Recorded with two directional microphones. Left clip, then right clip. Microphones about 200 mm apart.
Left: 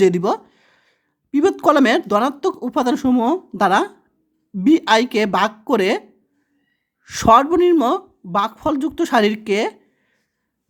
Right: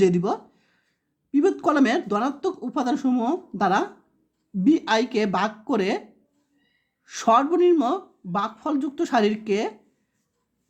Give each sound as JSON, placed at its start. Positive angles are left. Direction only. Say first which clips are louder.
{"t": 0.0, "sound": "speech", "louder": "left 5 dB", "side_deg": 40}
{"t": 7.0, "sound": "speech", "louder": "left 7 dB", "side_deg": 35}